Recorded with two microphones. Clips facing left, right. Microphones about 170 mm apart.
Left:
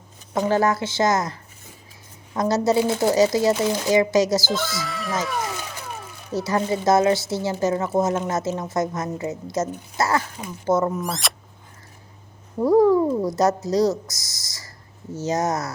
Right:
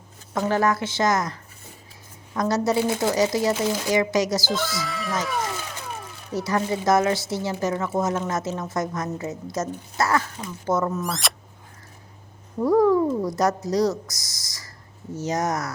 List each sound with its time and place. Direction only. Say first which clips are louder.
0.4 s speech: left 1 dB; 30° left (ahead or behind)
4.4 s speech: left 1 dB; centre (ahead or behind)
6.4 s speech: left 2 dB; 25° left (ahead or behind)
11.0 s speech: even; centre (ahead or behind)
12.5 s speech: left 2 dB; 25° left (ahead or behind)